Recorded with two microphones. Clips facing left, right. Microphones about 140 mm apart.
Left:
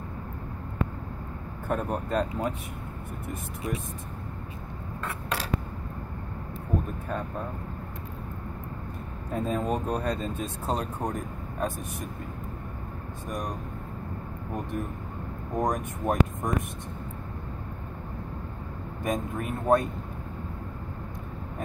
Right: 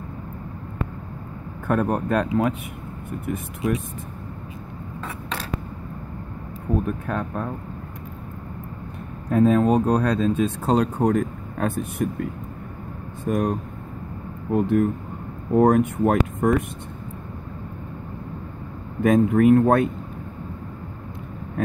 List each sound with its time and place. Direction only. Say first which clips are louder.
1.7 s speech: right 7 dB; 65° right (ahead or behind); by 2.5 s 80° right
6.9 s speech: right 6 dB; 65° right (ahead or behind)
9.3 s speech: right 11 dB; 75° right (ahead or behind)
13.3 s speech: right 11 dB; 65° right (ahead or behind)
19.0 s speech: right 15 dB; 75° right (ahead or behind)